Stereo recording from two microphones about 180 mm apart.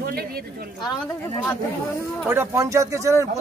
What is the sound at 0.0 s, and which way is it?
Speech, 55° right (ahead or behind).